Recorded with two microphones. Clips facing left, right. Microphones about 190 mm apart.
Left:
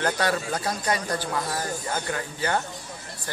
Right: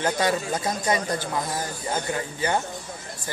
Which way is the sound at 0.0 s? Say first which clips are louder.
Right 1 dB; 15° right (ahead or behind).